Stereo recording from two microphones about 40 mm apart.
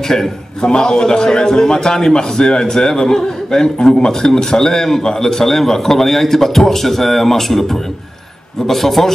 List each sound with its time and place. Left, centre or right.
0.1 s a man's voice: centre